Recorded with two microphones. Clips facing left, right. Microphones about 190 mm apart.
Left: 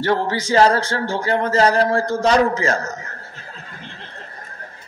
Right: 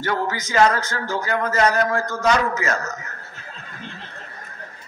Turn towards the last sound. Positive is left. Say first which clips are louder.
# left 3 dB
turn(degrees=30)  # may be behind; listen again after turning